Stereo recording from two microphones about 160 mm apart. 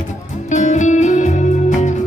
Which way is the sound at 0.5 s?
50° left (ahead or behind).